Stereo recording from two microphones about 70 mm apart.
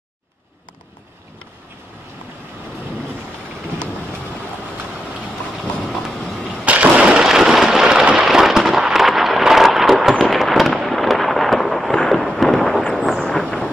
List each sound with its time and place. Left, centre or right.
5.8 s vehicle: centre
6.5 s a sound: centre
7.2 s firecracker: centre
10.3 s fireworks: centre